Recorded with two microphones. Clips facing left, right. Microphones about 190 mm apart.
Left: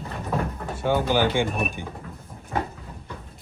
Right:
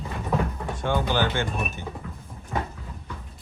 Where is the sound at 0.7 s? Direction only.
10° left (ahead or behind).